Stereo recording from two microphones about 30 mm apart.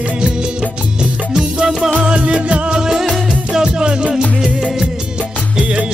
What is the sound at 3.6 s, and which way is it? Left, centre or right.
Music, right.